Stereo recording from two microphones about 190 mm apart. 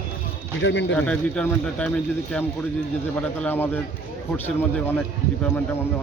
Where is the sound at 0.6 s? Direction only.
70° left (ahead or behind).